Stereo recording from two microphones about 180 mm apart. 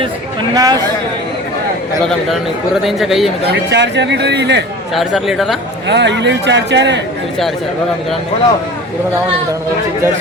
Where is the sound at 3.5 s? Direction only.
70° right (ahead or behind).